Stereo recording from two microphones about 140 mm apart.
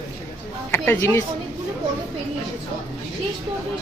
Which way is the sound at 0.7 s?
15° left (ahead or behind).